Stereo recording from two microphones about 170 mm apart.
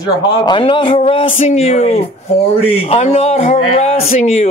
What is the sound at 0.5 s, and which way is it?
Speech, 30° left (ahead or behind).